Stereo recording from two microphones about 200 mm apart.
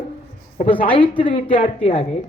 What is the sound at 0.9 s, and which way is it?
A man's voice, 25° left (ahead or behind).